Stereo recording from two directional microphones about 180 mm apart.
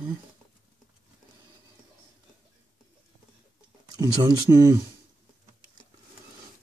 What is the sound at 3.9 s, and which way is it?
Speech, 20° right (ahead or behind).